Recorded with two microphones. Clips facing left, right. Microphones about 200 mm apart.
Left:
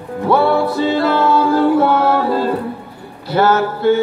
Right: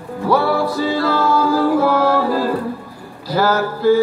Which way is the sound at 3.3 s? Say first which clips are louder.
Left 3 dB; 25° left (ahead or behind).